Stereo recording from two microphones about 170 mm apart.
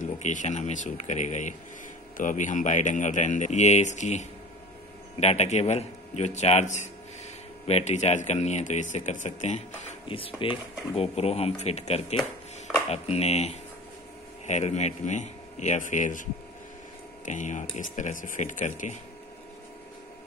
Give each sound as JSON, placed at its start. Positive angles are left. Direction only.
{"t": 0.0, "sound": "speech", "side_deg": 45}